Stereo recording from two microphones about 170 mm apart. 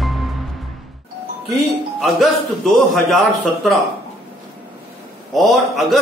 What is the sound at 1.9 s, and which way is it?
A man's voice, centre (ahead or behind).